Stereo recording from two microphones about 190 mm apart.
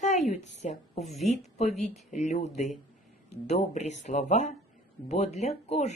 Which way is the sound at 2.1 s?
35° left (ahead or behind).